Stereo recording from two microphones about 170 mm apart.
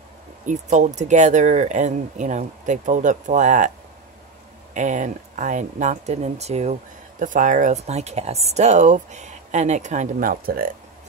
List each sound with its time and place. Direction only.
0.5 s speech: 45° right (ahead or behind)
4.7 s speech: 45° right (ahead or behind)